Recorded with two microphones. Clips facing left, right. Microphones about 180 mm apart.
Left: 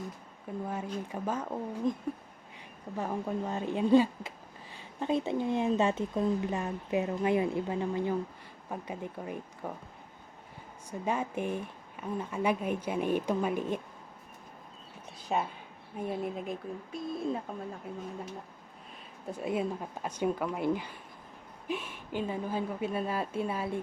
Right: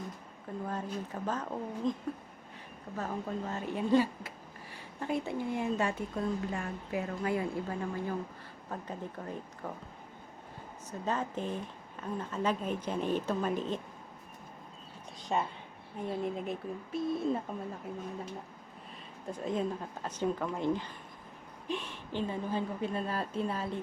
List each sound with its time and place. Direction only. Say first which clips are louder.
0.7 s speech: even; 10° left (ahead or behind)
11.0 s speech: left 2 dB; 10° left (ahead or behind)
15.3 s speech: left 1 dB; 10° left (ahead or behind)
19.3 s speech: left 1 dB; 10° left (ahead or behind)